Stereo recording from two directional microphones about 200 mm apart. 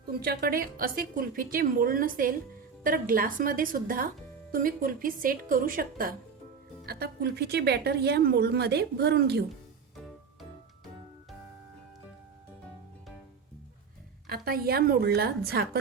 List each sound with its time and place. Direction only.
0.1 s speech: 50° right (ahead or behind)
14.3 s speech: 50° right (ahead or behind)